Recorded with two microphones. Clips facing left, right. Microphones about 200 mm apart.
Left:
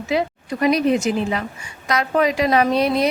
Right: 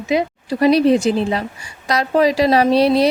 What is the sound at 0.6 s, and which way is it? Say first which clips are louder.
Speech: right 4 dB; 30° right (ahead or behind).